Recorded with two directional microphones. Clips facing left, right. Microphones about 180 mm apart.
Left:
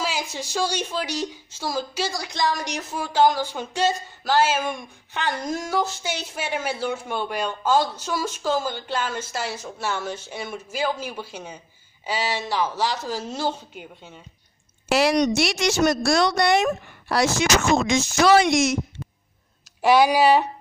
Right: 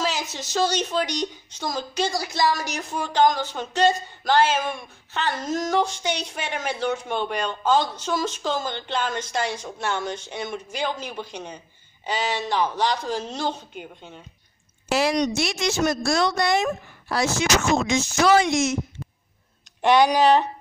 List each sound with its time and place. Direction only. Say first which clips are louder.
0.0 s a woman's voice: right 1 dB; 10° left (ahead or behind)
14.9 s a woman's voice: left 2 dB; 75° left (ahead or behind)
19.8 s a woman's voice: left 1 dB; 5° left (ahead or behind)